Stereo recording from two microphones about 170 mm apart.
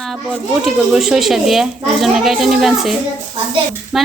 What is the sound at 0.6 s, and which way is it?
Speech, centre (ahead or behind).